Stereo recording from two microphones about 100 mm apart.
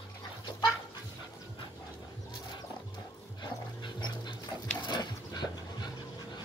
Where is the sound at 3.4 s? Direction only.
45° left (ahead or behind).